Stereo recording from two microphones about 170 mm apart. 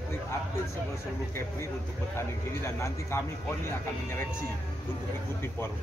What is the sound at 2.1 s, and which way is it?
A man's voice, 15° left (ahead or behind).